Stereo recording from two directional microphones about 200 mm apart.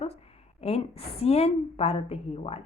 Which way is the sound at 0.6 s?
30° left (ahead or behind).